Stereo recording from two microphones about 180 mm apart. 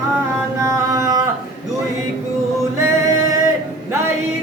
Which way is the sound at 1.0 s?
20° right (ahead or behind).